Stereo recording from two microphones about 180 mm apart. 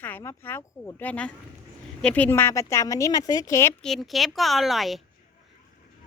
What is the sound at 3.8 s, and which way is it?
A woman's voice, centre (ahead or behind).